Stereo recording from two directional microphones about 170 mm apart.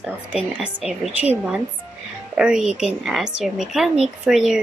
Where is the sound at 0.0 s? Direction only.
5° right (ahead or behind).